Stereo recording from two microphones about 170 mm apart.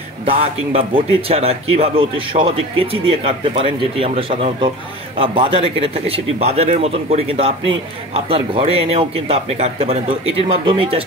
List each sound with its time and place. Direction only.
0.2 s speech: 35° right (ahead or behind)